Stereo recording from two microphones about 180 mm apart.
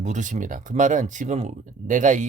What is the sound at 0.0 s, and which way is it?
Speech, 45° right (ahead or behind).